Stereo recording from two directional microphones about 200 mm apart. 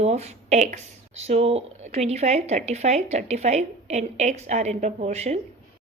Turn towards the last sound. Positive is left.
turn(degrees=-35)  # may be behind; listen again after turning